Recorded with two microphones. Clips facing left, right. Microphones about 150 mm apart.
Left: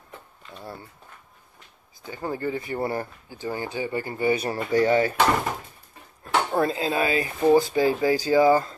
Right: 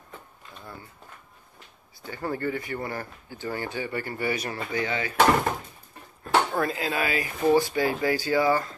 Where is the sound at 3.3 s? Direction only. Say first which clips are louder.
Left 1 dB; 15° left (ahead or behind).